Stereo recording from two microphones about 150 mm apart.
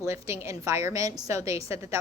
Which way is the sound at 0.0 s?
20° right (ahead or behind).